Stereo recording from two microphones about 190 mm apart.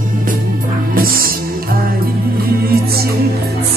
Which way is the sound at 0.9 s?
50° right (ahead or behind).